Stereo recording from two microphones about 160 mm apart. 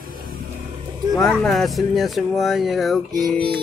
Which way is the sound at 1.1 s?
Centre (ahead or behind).